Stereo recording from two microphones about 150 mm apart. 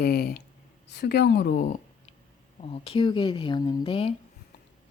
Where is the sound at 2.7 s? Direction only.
40° left (ahead or behind).